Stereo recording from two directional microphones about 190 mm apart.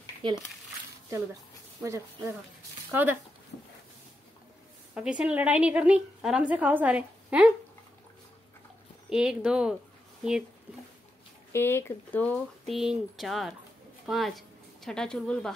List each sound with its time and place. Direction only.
0.2 s speech: 25° right (ahead or behind)
1.8 s a woman's voice: 15° right (ahead or behind)
4.9 s a woman's voice: 5° right (ahead or behind)
9.1 s speech: 5° right (ahead or behind)
11.5 s speech: 10° left (ahead or behind)